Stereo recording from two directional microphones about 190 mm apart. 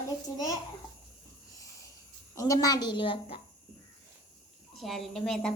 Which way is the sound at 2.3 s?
15° left (ahead or behind).